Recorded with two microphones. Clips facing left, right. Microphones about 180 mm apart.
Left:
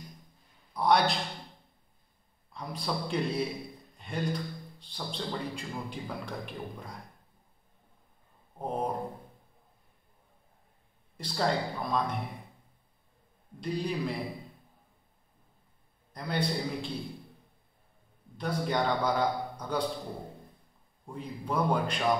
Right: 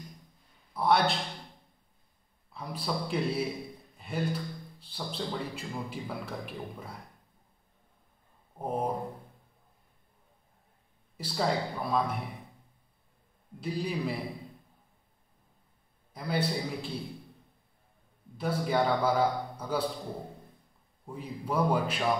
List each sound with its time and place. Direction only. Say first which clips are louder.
0.7 s a man's voice: even; centre (ahead or behind)
2.5 s speech: even; 5° right (ahead or behind)
8.5 s a man's voice: right 1 dB; 5° right (ahead or behind)
11.1 s speech: even; 5° right (ahead or behind)
13.6 s speech: left 1 dB; 5° right (ahead or behind)
16.1 s a man's voice: right 1 dB; 5° right (ahead or behind)
18.4 s speech: right 2 dB; 5° right (ahead or behind)
21.1 s a man's voice: even; 5° right (ahead or behind)